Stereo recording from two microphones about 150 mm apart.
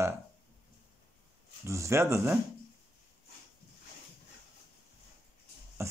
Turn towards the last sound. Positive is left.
turn(degrees=-15)  # may be behind; listen again after turning